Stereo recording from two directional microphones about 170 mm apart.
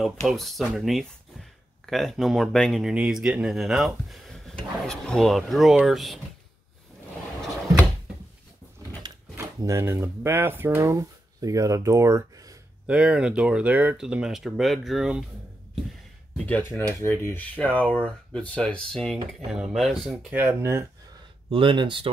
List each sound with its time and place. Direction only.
0.3 s speech: centre (ahead or behind)
9.0 s speech: 20° right (ahead or behind)
12.8 s speech: 5° right (ahead or behind)
16.4 s speech: 10° left (ahead or behind); by 20.8 s 15° right (ahead or behind)
21.5 s speech: 30° right (ahead or behind)